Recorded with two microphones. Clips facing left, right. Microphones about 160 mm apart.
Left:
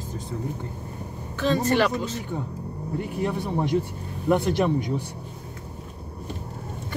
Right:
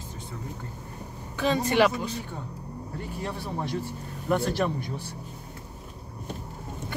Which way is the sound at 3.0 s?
15° left (ahead or behind).